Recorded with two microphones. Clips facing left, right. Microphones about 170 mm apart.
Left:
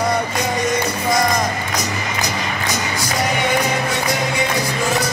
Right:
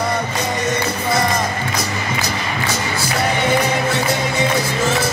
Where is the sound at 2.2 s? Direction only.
15° left (ahead or behind).